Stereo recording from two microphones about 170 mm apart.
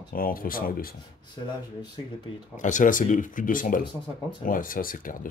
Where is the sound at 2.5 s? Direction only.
50° left (ahead or behind).